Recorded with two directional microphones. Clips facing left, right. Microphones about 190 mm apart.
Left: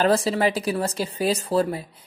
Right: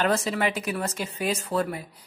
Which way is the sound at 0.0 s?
35° left (ahead or behind).